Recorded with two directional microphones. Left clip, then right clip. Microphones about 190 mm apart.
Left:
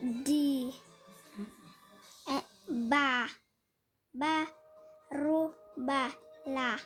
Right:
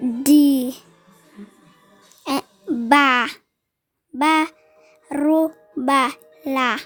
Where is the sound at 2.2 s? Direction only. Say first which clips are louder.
Right 11 dB; 60° right (ahead or behind).